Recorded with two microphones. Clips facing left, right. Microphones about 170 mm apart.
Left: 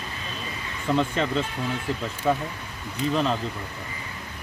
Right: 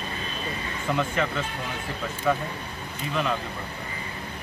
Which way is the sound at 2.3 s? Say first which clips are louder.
Left 1 dB; 30° left (ahead or behind).